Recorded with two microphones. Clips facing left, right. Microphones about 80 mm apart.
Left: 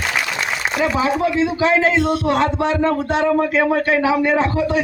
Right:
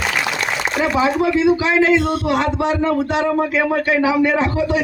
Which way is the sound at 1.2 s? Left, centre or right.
Left.